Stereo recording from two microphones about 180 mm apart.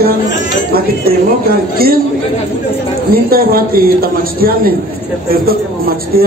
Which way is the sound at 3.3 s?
55° right (ahead or behind).